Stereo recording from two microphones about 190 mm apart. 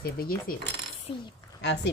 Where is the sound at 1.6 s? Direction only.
65° left (ahead or behind).